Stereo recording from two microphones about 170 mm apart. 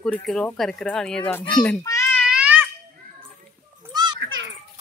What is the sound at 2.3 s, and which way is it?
Babbling, 10° right (ahead or behind).